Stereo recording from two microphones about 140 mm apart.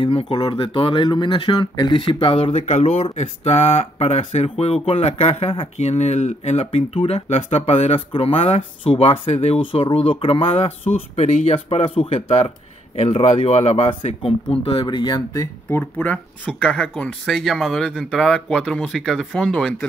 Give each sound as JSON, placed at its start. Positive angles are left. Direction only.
{"t": 0.0, "sound": "speech", "side_deg": 40}
{"t": 5.8, "sound": "speech", "side_deg": 55}
{"t": 7.2, "sound": "speech", "side_deg": 50}
{"t": 16.0, "sound": "speech", "side_deg": 10}